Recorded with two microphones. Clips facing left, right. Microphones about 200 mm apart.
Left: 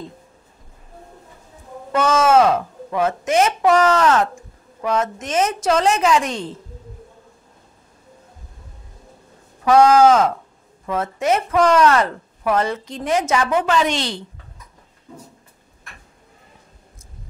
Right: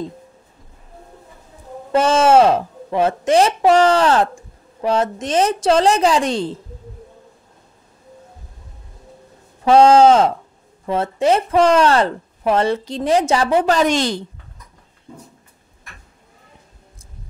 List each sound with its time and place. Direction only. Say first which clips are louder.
1.9 s speech: right 3 dB; 30° right (ahead or behind)
9.7 s speech: right 2 dB; 25° right (ahead or behind); by 14.2 s 45° right (ahead or behind)